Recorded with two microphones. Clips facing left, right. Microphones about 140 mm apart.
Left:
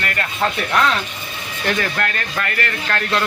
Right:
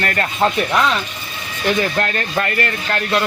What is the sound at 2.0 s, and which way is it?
Speech, 30° right (ahead or behind).